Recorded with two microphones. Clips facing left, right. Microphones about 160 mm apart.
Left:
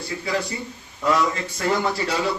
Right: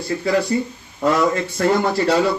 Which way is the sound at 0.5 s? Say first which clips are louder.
Right 11 dB; 45° right (ahead or behind).